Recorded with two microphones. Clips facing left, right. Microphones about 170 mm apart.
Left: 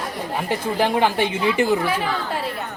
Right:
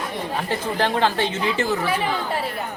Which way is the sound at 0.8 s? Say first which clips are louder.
Left 2 dB; 15° left (ahead or behind).